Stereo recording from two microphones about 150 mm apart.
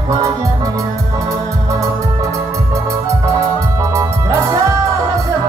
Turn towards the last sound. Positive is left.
turn(degrees=-20)  # may be behind; listen again after turning